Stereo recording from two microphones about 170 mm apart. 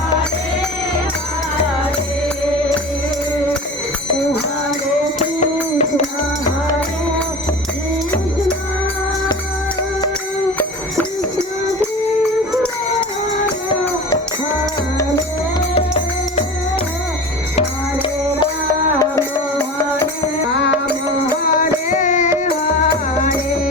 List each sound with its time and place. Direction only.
5.7 s music: 40° left (ahead or behind)
18.9 s music: 15° left (ahead or behind)
21.4 s music: 50° left (ahead or behind)